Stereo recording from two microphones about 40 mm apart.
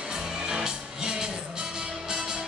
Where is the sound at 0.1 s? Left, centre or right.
Centre.